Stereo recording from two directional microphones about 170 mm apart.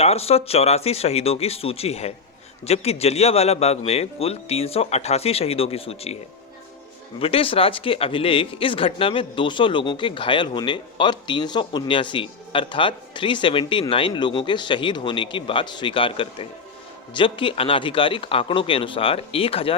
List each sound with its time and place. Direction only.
0.0 s a man's voice: 35° left (ahead or behind)
7.2 s a man's voice: 35° left (ahead or behind)